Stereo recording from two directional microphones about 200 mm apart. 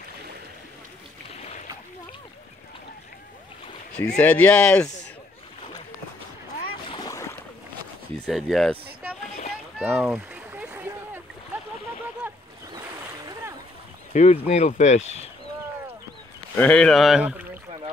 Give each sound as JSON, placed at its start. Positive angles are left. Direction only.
{"t": 4.2, "sound": "speech", "side_deg": 5}
{"t": 6.9, "sound": "boat", "side_deg": 15}
{"t": 8.3, "sound": "speech", "side_deg": 0}
{"t": 9.8, "sound": "splash", "side_deg": -5}
{"t": 12.2, "sound": "boat", "side_deg": -10}
{"t": 14.1, "sound": "speech", "side_deg": 35}
{"t": 16.5, "sound": "speech", "side_deg": 5}